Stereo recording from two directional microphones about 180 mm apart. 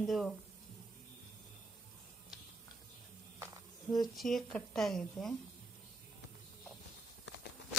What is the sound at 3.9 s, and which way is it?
Speech, centre (ahead or behind).